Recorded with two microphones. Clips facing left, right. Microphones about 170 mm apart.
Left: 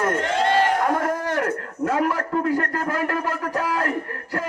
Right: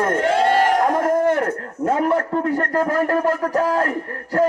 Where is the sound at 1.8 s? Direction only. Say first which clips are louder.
Right 4 dB; 30° right (ahead or behind).